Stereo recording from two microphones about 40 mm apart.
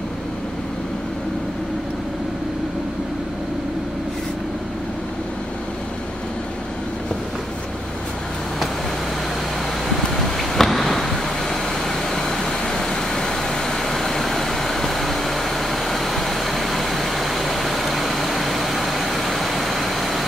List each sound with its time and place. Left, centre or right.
9.8 s vehicle: centre